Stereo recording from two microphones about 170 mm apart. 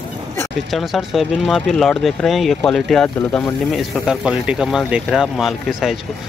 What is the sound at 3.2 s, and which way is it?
Speech, 15° left (ahead or behind).